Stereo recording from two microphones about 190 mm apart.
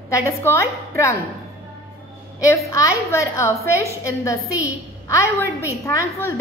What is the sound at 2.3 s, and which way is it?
A woman's voice, 15° left (ahead or behind).